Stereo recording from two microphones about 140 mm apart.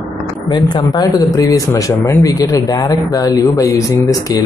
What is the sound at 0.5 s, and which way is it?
Speech, 30° left (ahead or behind).